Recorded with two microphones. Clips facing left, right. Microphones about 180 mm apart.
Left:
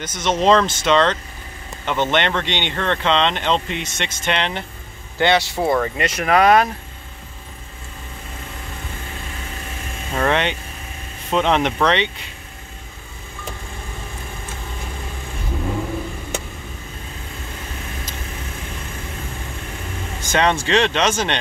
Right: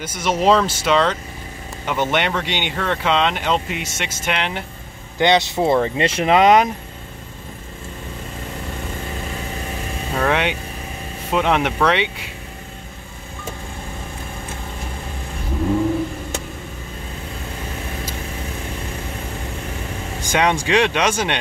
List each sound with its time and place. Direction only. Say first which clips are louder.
0.0 s speech: even; 10° right (ahead or behind)
5.2 s speech: right 1 dB; 20° right (ahead or behind)
10.1 s speech: even; 5° right (ahead or behind)
20.2 s speech: even; 10° right (ahead or behind)